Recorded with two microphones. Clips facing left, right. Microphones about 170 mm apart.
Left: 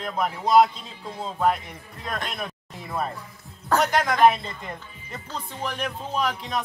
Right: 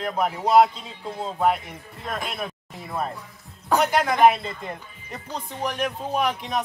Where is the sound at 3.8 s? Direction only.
10° right (ahead or behind).